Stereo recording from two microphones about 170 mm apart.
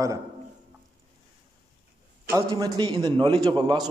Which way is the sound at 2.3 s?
20° right (ahead or behind).